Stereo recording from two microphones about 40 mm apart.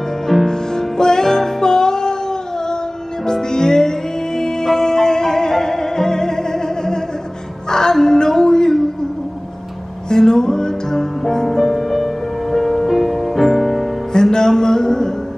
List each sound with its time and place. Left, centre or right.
0.5 s music: centre
3.3 s music: centre
10.0 s music: centre
14.1 s music: centre